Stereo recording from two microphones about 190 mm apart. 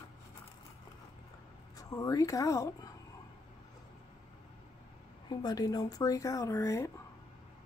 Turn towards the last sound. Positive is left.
turn(degrees=15)  # may be behind; listen again after turning